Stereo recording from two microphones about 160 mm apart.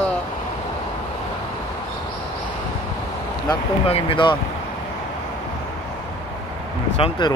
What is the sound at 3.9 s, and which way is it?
Speech, 35° left (ahead or behind).